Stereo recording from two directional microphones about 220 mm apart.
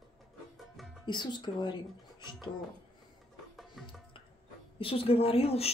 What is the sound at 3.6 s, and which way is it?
Music, centre (ahead or behind).